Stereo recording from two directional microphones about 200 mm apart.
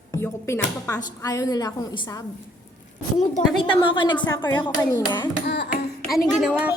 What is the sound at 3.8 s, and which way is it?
A woman's voice, 25° left (ahead or behind).